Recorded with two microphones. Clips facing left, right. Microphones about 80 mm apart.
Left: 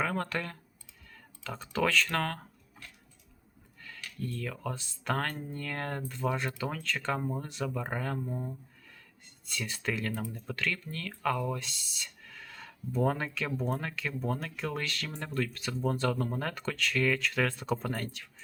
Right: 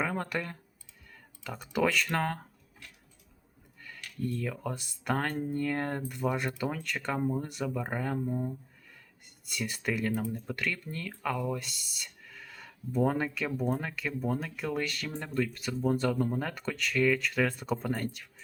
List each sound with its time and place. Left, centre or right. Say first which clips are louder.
0.0 s speech: even; centre
4.2 s speech: right 3 dB; right
8.2 s speech: right 4 dB; centre